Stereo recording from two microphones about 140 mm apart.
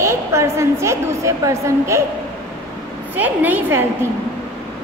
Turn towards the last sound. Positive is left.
turn(degrees=-15)  # may be behind; listen again after turning